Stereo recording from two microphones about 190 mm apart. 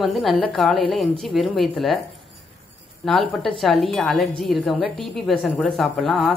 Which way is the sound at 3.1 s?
Centre (ahead or behind).